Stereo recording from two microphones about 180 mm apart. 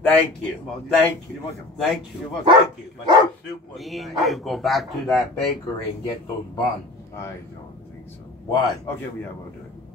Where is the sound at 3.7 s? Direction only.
Centre (ahead or behind).